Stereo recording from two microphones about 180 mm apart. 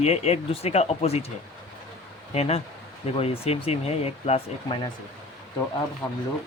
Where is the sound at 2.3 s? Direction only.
35° left (ahead or behind).